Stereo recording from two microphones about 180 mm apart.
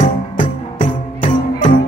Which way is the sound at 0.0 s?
45° left (ahead or behind).